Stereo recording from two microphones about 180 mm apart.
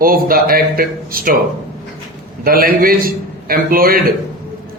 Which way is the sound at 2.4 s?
55° right (ahead or behind).